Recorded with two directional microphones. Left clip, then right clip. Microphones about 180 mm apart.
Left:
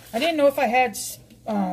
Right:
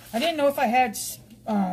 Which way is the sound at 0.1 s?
20° left (ahead or behind).